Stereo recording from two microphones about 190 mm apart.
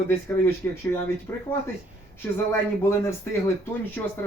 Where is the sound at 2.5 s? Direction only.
15° left (ahead or behind).